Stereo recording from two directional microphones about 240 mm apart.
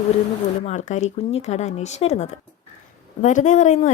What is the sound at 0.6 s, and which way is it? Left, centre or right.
Speech, left.